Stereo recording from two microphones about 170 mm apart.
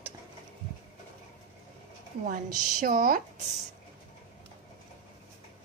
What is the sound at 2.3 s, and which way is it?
Speech, 55° right (ahead or behind).